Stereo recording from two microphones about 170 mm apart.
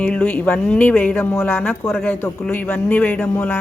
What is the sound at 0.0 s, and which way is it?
Speech, 10° left (ahead or behind).